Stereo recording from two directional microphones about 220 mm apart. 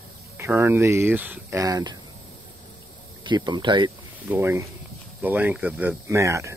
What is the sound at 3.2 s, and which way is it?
Speech, 20° right (ahead or behind).